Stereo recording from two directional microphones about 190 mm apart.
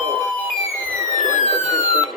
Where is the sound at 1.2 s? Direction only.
40° left (ahead or behind).